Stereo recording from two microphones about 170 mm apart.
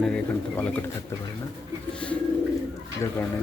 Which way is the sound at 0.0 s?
5° left (ahead or behind).